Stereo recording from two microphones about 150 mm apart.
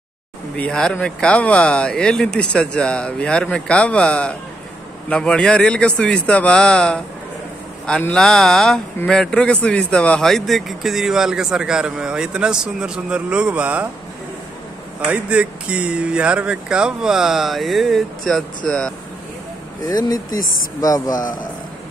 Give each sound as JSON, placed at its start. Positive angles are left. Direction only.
{"t": 0.6, "sound": "a man's voice", "side_deg": 5}
{"t": 15.0, "sound": "a man's voice", "side_deg": -10}
{"t": 19.9, "sound": "speech", "side_deg": 25}
{"t": 21.1, "sound": "a man's voice", "side_deg": 65}